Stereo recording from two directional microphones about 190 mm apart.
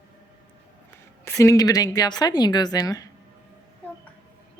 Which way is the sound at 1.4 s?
20° left (ahead or behind).